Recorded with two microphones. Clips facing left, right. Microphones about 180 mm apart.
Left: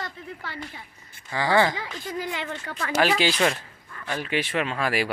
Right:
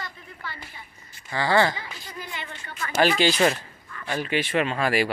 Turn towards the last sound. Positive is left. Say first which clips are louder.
# right 2 dB
turn(degrees=0)  # may be behind; listen again after turning